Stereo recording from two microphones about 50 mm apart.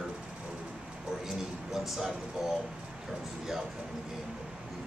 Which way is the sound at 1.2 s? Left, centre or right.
Centre.